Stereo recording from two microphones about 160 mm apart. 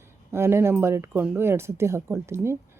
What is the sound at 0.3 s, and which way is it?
A woman's voice, 15° right (ahead or behind).